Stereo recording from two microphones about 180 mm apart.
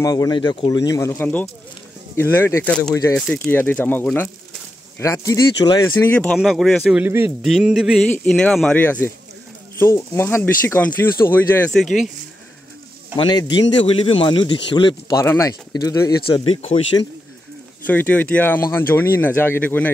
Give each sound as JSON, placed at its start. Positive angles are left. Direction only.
{"t": 0.0, "sound": "a man's voice", "side_deg": 20}
{"t": 5.9, "sound": "a man's voice", "side_deg": 10}
{"t": 11.8, "sound": "a man's voice", "side_deg": 0}
{"t": 13.1, "sound": "a man's voice", "side_deg": 25}
{"t": 17.8, "sound": "speech", "side_deg": 10}